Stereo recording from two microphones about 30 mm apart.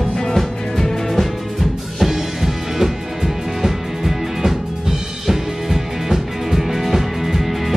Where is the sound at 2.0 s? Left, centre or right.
Centre.